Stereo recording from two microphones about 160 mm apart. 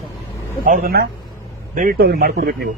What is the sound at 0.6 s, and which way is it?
A man's voice, 60° right (ahead or behind).